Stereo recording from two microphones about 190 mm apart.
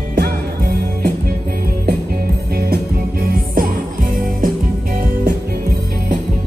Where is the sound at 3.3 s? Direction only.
50° right (ahead or behind).